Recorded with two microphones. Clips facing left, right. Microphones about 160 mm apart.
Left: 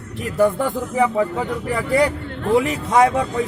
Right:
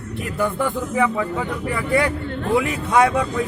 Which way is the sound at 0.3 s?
40° left (ahead or behind).